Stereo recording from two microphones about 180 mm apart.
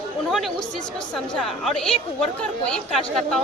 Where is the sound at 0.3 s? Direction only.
Centre (ahead or behind).